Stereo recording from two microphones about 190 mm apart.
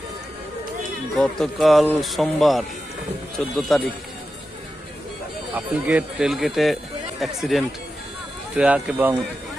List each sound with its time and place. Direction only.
1.2 s speech: centre (ahead or behind)
5.5 s speech: 5° right (ahead or behind)